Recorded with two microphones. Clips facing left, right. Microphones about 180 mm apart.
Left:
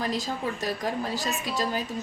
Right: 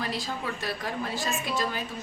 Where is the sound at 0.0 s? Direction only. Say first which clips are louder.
Left 3 dB; 40° left (ahead or behind).